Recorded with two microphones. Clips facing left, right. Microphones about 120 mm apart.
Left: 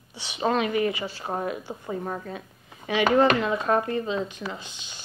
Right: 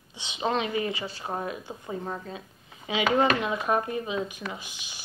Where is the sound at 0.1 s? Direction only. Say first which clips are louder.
Left 2 dB; 20° right (ahead or behind).